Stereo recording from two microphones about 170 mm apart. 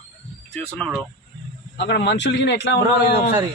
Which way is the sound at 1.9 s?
80° left.